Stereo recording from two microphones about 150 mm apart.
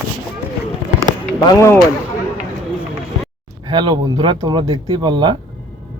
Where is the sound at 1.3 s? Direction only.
20° left (ahead or behind).